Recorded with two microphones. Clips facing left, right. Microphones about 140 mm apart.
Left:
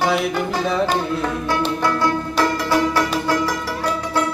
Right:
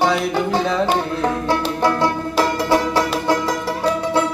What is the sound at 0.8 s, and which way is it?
Music, 25° right (ahead or behind).